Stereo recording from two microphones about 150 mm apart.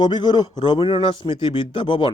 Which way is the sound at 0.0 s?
30° left (ahead or behind).